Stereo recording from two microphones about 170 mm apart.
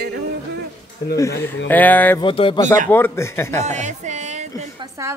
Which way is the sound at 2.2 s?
30° left (ahead or behind).